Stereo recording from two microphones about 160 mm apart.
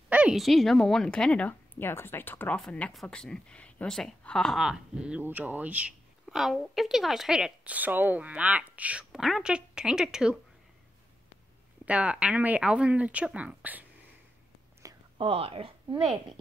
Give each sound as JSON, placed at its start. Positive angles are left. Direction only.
{"t": 0.1, "sound": "a woman's voice", "side_deg": -5}
{"t": 11.8, "sound": "speech", "side_deg": -10}
{"t": 14.8, "sound": "whispering", "side_deg": -20}
{"t": 15.1, "sound": "speech", "side_deg": -35}
{"t": 16.0, "sound": "a woman's voice", "side_deg": 0}